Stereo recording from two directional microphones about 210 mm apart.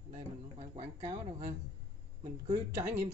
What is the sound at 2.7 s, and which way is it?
Speech, 15° right (ahead or behind).